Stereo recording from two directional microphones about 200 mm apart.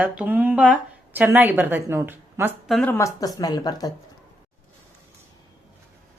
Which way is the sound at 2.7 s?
10° left (ahead or behind).